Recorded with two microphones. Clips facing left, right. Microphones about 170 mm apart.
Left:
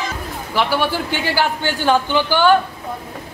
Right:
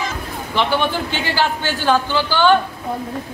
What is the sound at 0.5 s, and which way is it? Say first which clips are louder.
A man's voice: even; 10° left (ahead or behind).